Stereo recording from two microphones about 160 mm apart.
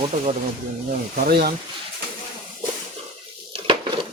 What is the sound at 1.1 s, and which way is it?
Speech, 60° right (ahead or behind).